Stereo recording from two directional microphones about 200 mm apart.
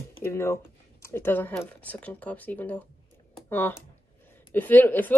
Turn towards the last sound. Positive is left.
turn(degrees=10)  # may be behind; listen again after turning